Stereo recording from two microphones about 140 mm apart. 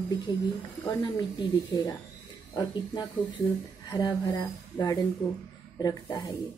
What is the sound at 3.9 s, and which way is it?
A woman's voice, 25° left (ahead or behind).